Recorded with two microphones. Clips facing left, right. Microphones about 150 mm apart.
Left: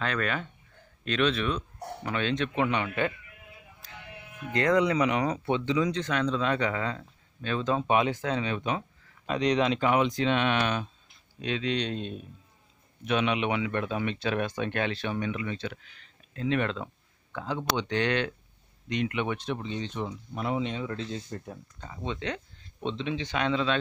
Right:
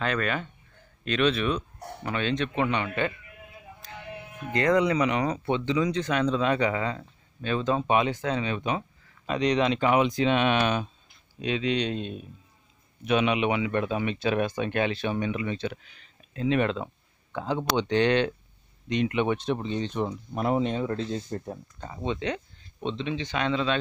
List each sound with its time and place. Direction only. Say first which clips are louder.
0.0 s speech: right 2 dB; 5° right (ahead or behind)
4.5 s speech: right 1 dB; centre (ahead or behind); by 22.0 s 35° right (ahead or behind)
22.0 s speech: right 4 dB; 15° right (ahead or behind)